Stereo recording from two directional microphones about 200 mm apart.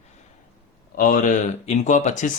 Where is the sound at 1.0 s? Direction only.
45° left (ahead or behind).